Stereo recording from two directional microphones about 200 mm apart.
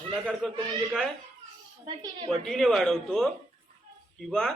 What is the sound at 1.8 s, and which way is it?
Speech, 25° right (ahead or behind).